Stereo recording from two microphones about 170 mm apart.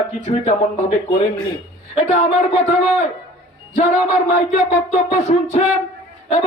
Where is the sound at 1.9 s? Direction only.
35° left (ahead or behind).